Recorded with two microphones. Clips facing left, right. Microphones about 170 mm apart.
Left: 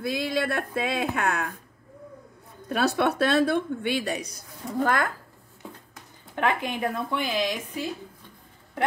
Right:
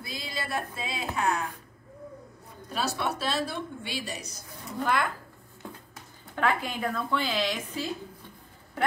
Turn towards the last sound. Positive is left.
turn(degrees=15)  # may be behind; listen again after turning